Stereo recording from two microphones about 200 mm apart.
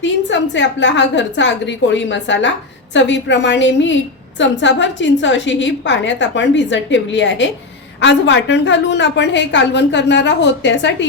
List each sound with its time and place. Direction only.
0.0 s a woman's voice: 65° left (ahead or behind)